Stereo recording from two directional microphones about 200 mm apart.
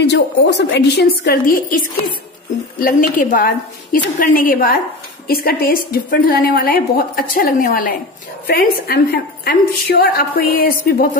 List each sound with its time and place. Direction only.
0.1 s a woman's voice: 60° left (ahead or behind)